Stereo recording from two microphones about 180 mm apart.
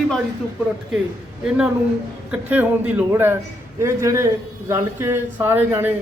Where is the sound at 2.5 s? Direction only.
10° right (ahead or behind).